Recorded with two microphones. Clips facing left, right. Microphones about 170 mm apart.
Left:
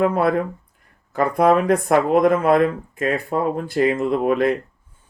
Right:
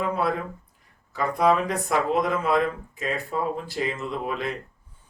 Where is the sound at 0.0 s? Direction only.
55° left (ahead or behind).